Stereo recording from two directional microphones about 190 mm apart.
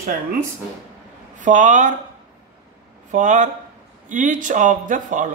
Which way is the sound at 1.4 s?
40° right (ahead or behind).